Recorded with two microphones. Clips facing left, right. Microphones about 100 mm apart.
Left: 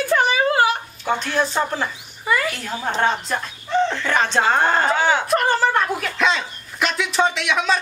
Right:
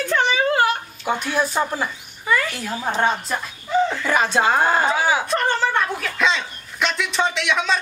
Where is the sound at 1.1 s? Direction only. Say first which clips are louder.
Left 1 dB; 10° right (ahead or behind).